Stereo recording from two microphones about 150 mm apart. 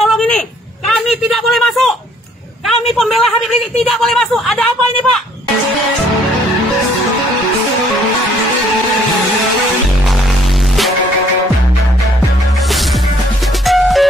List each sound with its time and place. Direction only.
0.0 s a sound: centre (ahead or behind)
2.6 s a man's voice: centre (ahead or behind)
13.7 s music: centre (ahead or behind)